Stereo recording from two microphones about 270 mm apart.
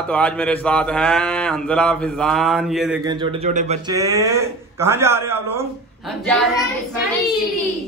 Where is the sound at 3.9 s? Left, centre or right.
Centre.